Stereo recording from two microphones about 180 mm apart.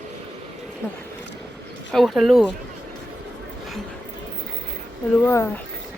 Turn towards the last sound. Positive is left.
turn(degrees=15)  # may be behind; listen again after turning